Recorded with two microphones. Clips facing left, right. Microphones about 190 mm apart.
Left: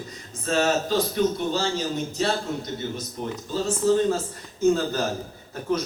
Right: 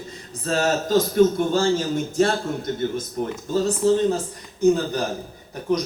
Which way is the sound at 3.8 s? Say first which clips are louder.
Right 1 dB; 30° right (ahead or behind).